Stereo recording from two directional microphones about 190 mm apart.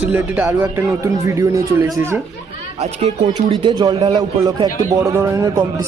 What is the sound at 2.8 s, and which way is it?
Speech, 35° right (ahead or behind).